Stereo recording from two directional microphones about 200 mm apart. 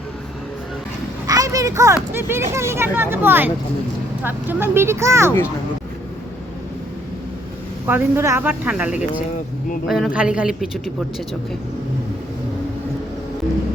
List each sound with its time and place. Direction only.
1.3 s a sound: 15° right (ahead or behind)
2.1 s speech: 10° right (ahead or behind)
7.9 s speech: 10° right (ahead or behind)